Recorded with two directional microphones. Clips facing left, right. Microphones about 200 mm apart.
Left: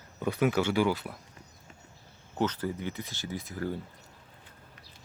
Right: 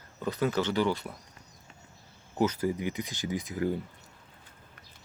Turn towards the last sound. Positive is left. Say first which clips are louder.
# right 4 dB
turn(degrees=-15)  # may be behind; listen again after turning